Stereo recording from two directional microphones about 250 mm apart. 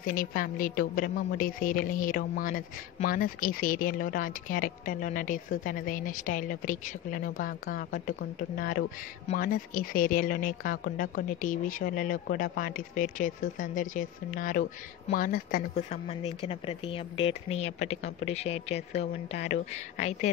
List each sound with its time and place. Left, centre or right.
0.0 s speech: left